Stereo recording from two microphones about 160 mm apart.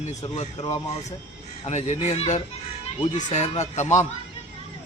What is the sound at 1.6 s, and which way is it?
Speech, 45° left (ahead or behind).